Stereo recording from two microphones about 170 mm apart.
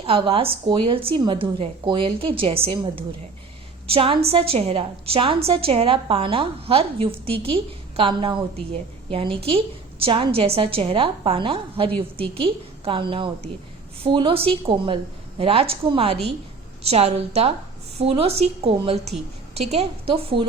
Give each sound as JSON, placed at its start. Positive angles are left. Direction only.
{"t": 0.0, "sound": "a woman's voice", "side_deg": -30}